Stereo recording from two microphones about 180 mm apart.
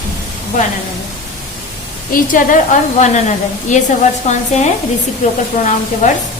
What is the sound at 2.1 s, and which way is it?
A woman's voice, 45° left (ahead or behind).